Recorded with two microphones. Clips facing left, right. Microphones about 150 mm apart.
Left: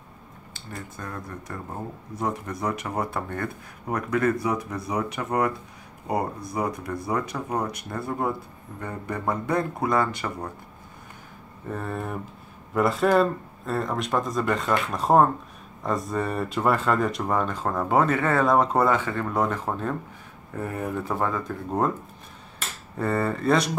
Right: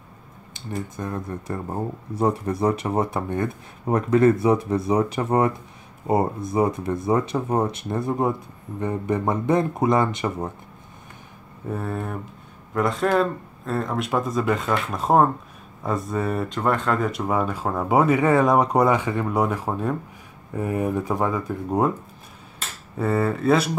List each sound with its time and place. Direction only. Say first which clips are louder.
0.9 s speech: right 6 dB; 25° right (ahead or behind)
11.7 s speech: right 2 dB; centre (ahead or behind)
22.9 s speech: right 3 dB; 5° right (ahead or behind)